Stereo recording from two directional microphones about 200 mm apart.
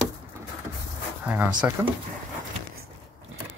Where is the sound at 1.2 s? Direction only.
10° right (ahead or behind).